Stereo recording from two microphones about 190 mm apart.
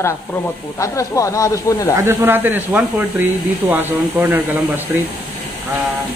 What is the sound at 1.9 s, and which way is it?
Speech, 15° right (ahead or behind).